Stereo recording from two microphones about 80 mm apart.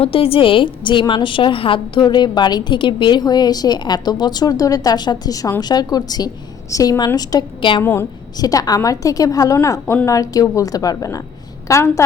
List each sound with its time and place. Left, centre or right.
0.1 s a woman's voice: left
7.8 s a woman's voice: left
8.4 s a woman's voice: left
11.7 s a woman's voice: left